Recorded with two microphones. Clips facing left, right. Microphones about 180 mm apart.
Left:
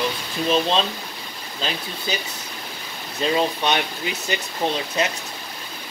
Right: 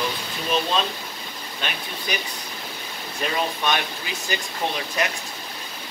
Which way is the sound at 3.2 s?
20° left (ahead or behind).